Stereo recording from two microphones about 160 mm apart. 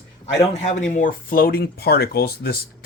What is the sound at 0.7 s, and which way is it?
Speech, 50° left (ahead or behind).